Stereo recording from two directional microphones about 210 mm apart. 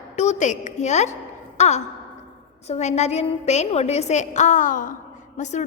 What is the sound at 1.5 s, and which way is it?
Sigh, 35° left (ahead or behind).